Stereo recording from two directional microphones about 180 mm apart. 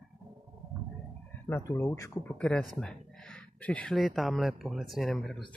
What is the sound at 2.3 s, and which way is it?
Speech, 5° left (ahead or behind).